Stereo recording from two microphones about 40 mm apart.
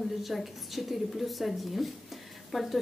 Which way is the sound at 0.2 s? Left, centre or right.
Centre.